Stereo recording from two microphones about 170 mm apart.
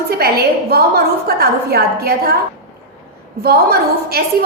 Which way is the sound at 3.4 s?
65° right (ahead or behind).